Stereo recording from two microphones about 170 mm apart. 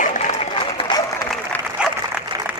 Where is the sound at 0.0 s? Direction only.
45° left (ahead or behind).